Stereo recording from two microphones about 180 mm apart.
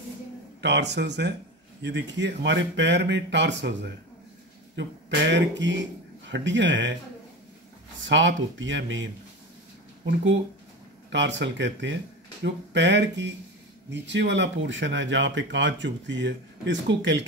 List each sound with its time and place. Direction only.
0.6 s speech: 70° right (ahead or behind); by 7.0 s 90° right
8.0 s speech: 90° right
11.1 s speech: 85° right
12.4 s speech: 80° right